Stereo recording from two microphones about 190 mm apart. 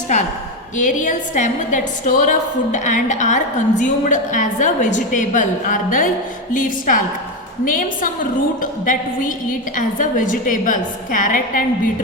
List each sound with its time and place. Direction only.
0.8 s a woman's voice: 40° left (ahead or behind)